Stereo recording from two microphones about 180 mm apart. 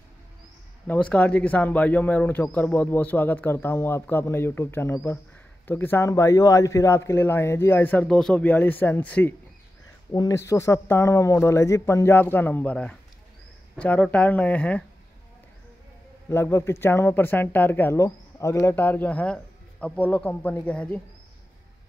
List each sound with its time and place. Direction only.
0.8 s speech: 5° left (ahead or behind)
16.3 s speech: 15° left (ahead or behind)